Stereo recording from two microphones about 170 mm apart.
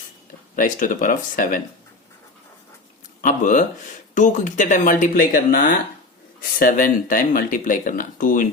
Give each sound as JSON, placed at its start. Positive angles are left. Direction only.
{"t": 0.5, "sound": "speech", "side_deg": 50}
{"t": 3.2, "sound": "speech", "side_deg": 50}